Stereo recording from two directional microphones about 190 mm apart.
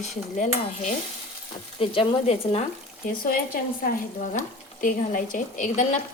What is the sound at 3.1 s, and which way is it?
Speech, 50° left (ahead or behind).